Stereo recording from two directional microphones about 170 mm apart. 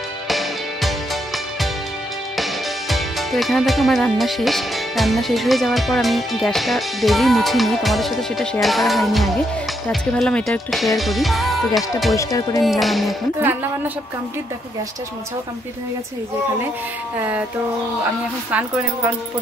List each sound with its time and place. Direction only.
0.3 s music: centre (ahead or behind)
2.3 s speech: centre (ahead or behind)
12.2 s speech: 20° left (ahead or behind)
12.6 s speech: centre (ahead or behind)
13.4 s speech: 10° right (ahead or behind)
17.2 s speech: 10° right (ahead or behind)
18.5 s speech: 10° right (ahead or behind)